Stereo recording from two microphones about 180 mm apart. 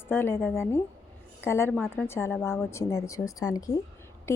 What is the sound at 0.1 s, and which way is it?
A woman's voice, 10° left (ahead or behind).